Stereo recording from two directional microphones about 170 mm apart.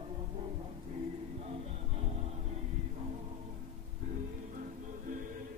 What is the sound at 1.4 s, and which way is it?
Music, 35° right (ahead or behind).